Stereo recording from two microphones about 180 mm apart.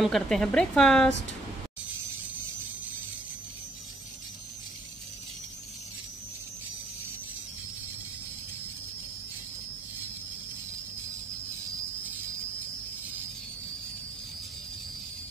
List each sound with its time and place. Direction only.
0.0 s a woman's voice: centre (ahead or behind)